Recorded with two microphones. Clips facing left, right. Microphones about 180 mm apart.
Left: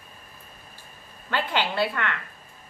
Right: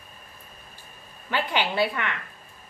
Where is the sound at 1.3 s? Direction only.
15° right (ahead or behind).